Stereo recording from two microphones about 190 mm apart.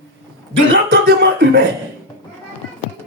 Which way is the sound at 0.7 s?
65° right (ahead or behind).